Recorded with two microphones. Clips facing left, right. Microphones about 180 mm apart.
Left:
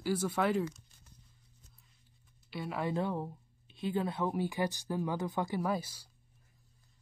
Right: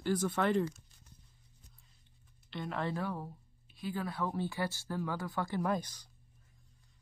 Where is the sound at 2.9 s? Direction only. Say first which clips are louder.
Left 4 dB; 20° left (ahead or behind).